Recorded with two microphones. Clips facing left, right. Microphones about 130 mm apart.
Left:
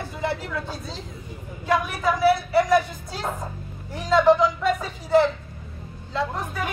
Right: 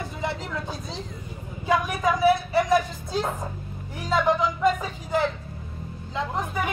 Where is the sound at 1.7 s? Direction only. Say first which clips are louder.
Even; 20° right (ahead or behind).